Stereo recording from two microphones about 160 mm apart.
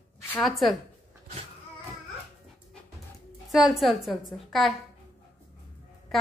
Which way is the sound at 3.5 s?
Centre (ahead or behind).